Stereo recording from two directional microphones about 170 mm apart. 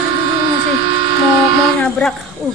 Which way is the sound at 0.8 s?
90° left.